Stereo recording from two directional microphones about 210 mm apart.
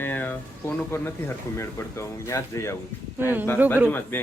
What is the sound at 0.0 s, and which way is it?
Speech, 10° left (ahead or behind).